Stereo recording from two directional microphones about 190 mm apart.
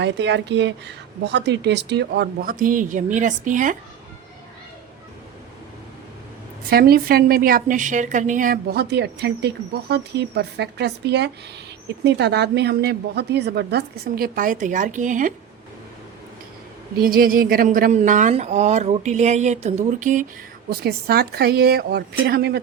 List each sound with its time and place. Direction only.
0.0 s speech: 70° right (ahead or behind); by 3.8 s 40° right (ahead or behind)
6.7 s a woman's voice: 55° right (ahead or behind)
17.0 s speech: 50° right (ahead or behind)
20.7 s speech: 55° right (ahead or behind)